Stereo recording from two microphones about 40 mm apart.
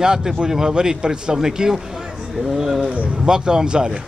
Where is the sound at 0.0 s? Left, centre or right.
Centre.